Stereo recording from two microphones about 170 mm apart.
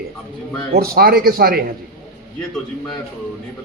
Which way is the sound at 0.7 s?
65° right (ahead or behind).